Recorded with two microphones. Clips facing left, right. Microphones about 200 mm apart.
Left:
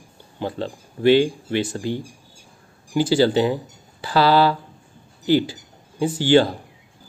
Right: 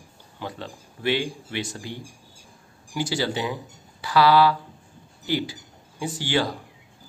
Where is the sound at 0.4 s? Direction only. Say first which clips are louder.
Left 8 dB; 30° left (ahead or behind).